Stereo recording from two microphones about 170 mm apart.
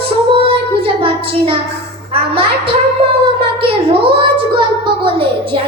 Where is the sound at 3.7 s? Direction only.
30° right (ahead or behind).